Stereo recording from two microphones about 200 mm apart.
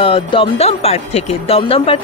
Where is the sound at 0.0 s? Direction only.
25° left (ahead or behind).